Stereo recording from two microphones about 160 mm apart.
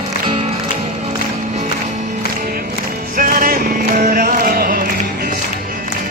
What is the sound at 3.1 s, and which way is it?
Music, 60° right (ahead or behind).